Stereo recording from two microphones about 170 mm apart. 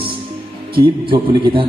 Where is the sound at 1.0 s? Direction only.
30° right (ahead or behind).